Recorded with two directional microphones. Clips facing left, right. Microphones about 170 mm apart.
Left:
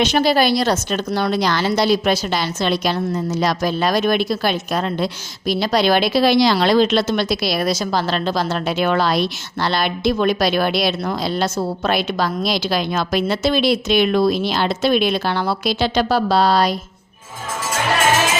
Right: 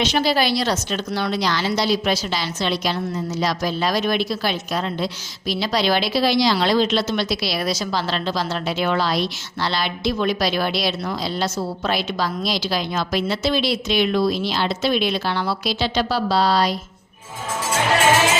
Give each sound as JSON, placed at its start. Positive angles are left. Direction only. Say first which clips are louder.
{"t": 0.0, "sound": "a woman's voice", "louder": "left 4 dB", "side_deg": 50}